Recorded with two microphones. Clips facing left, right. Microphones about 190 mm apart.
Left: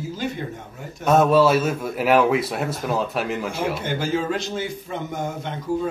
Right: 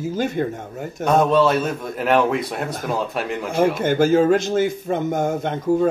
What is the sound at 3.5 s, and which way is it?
A man's voice, 50° right (ahead or behind).